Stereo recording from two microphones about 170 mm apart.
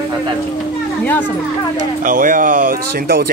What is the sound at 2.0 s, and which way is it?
Speech, 50° right (ahead or behind).